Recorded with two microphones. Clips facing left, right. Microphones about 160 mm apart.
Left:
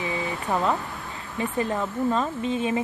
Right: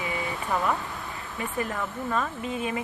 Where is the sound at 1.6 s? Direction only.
25° left (ahead or behind).